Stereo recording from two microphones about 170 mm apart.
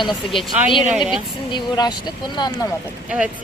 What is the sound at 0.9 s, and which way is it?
Speech, 5° right (ahead or behind).